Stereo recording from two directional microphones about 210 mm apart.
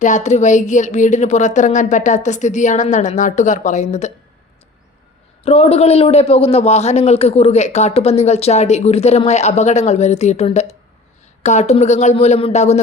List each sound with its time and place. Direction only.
0.0 s a man's voice: 35° left (ahead or behind)
5.5 s a man's voice: 30° left (ahead or behind)